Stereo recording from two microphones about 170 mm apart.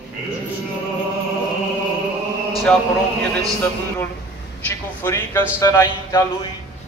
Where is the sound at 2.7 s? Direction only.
5° left (ahead or behind).